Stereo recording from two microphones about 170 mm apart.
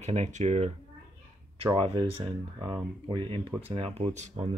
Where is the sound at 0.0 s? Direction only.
40° right (ahead or behind).